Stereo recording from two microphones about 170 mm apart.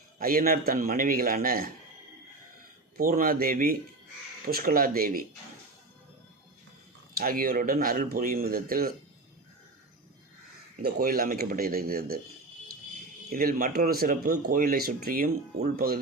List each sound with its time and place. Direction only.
0.2 s speech: 55° right (ahead or behind)
3.0 s speech: 55° right (ahead or behind)
7.2 s speech: 60° right (ahead or behind)
10.8 s speech: 60° right (ahead or behind)
13.3 s speech: 55° right (ahead or behind)